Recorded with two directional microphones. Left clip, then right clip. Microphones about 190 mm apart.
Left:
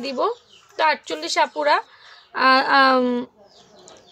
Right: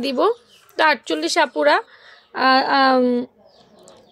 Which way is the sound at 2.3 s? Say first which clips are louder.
Even; 15° right (ahead or behind).